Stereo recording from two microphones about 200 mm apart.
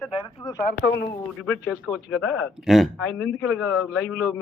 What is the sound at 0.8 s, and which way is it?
Speech, 60° left (ahead or behind).